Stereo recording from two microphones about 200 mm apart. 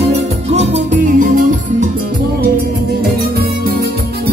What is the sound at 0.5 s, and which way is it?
Music, 35° right (ahead or behind).